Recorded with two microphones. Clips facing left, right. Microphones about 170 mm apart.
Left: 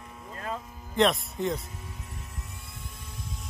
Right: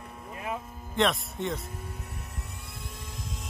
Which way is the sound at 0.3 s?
15° right (ahead or behind).